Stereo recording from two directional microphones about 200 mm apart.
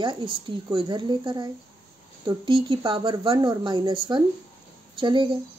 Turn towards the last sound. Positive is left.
turn(degrees=-25)  # may be behind; listen again after turning